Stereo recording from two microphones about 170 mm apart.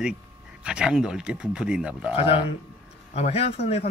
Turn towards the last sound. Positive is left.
turn(degrees=40)  # may be behind; listen again after turning